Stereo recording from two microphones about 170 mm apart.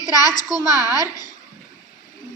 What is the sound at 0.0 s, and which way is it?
A child's voice, 20° left (ahead or behind).